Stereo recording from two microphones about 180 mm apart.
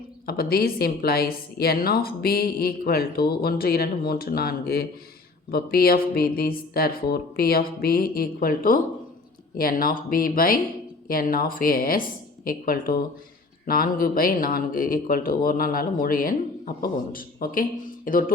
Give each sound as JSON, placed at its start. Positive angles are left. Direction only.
{"t": 0.3, "sound": "a woman's voice", "side_deg": 60}